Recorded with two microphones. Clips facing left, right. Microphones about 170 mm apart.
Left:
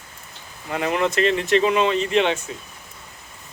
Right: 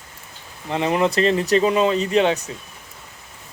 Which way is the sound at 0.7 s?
30° right (ahead or behind).